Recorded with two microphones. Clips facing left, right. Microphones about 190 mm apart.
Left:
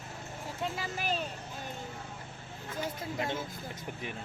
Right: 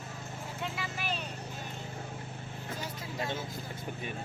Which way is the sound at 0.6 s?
40° left (ahead or behind).